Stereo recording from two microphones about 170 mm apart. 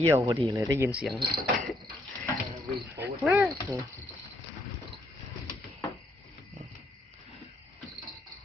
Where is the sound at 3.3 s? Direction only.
15° right (ahead or behind).